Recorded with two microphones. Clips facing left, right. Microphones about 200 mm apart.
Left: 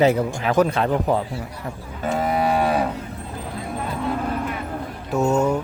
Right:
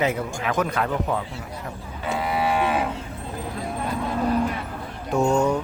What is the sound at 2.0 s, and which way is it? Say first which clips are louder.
Livestock: left 3 dB; 45° left (ahead or behind).